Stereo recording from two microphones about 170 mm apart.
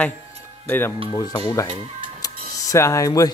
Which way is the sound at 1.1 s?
25° left (ahead or behind).